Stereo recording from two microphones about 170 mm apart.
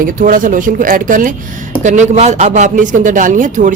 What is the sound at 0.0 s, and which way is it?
Speech, 55° right (ahead or behind).